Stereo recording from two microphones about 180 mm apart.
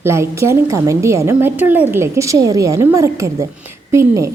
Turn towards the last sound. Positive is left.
turn(degrees=-15)  # may be behind; listen again after turning